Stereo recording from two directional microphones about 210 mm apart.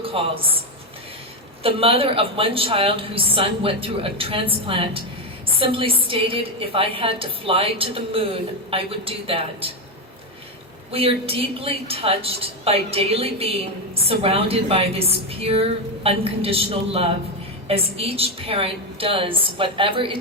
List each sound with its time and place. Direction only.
0.0 s a woman's voice: 25° right (ahead or behind)
1.6 s a woman's voice: 25° right (ahead or behind)
10.9 s a woman's voice: 25° right (ahead or behind)